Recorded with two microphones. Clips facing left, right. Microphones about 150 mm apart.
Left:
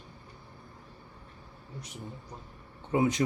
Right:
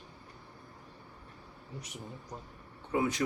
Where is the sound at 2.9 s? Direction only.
20° left (ahead or behind).